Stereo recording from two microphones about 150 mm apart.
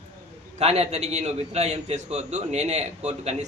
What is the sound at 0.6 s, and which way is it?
A man's voice, 45° right (ahead or behind).